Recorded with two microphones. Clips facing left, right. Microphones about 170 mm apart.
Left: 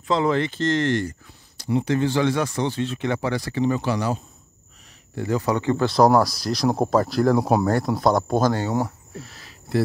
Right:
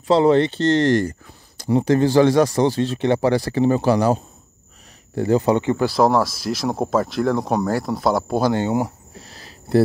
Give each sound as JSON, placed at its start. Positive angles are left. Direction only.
{"t": 0.1, "sound": "speech", "side_deg": -30}
{"t": 5.9, "sound": "speech", "side_deg": 0}
{"t": 8.5, "sound": "speech", "side_deg": -20}
{"t": 9.2, "sound": "a sound", "side_deg": -35}